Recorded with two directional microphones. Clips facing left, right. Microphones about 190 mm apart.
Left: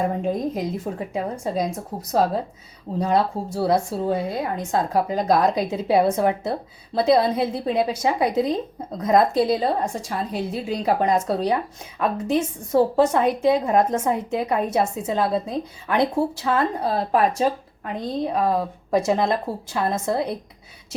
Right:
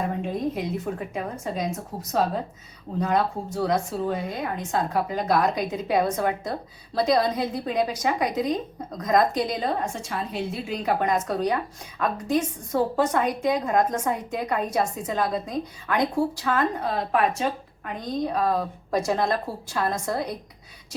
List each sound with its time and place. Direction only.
0.9 s speech: 30° left (ahead or behind)